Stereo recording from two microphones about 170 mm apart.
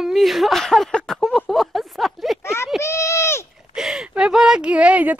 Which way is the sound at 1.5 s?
Centre (ahead or behind).